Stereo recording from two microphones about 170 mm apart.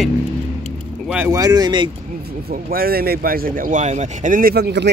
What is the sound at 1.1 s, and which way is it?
Speech, 15° right (ahead or behind).